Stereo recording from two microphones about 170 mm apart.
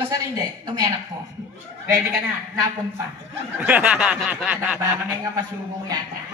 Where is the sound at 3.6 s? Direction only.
10° right (ahead or behind).